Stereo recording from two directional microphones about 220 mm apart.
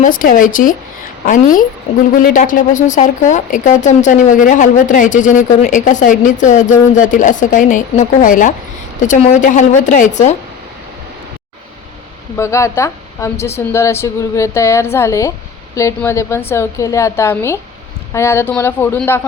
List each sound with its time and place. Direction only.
0.0 s speech: 40° left (ahead or behind)
12.4 s speech: 15° left (ahead or behind)